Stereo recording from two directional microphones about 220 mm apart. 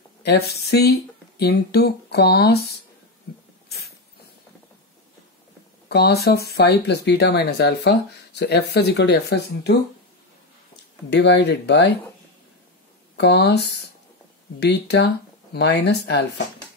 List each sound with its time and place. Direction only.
0.2 s speech: 50° left (ahead or behind)
5.9 s speech: 50° left (ahead or behind)
11.1 s speech: 50° left (ahead or behind)
13.1 s speech: 50° left (ahead or behind)
14.6 s speech: 50° left (ahead or behind)